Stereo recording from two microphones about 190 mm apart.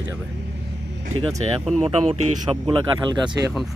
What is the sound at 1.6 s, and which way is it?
Speech, centre (ahead or behind).